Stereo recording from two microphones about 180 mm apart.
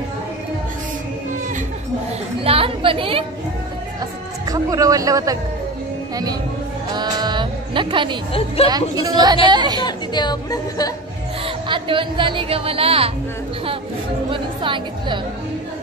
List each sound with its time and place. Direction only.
2.4 s a woman's voice: 30° right (ahead or behind)
4.5 s speech: 20° right (ahead or behind)
6.9 s music: 25° right (ahead or behind)
8.3 s a woman's voice: 30° left (ahead or behind)
8.6 s speech: 20° right (ahead or behind)
9.8 s a woman's voice: 25° left (ahead or behind)
11.4 s speech: 30° right (ahead or behind)
14.3 s speech: 30° right (ahead or behind)